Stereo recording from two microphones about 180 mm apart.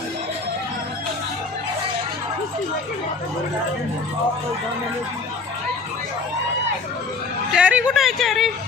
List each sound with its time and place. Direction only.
7.5 s speech: 5° right (ahead or behind)